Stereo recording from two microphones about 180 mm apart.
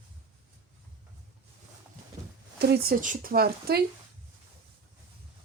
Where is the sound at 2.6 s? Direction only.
60° right (ahead or behind).